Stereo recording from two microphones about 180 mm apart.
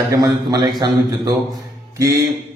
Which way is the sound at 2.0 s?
15° right (ahead or behind).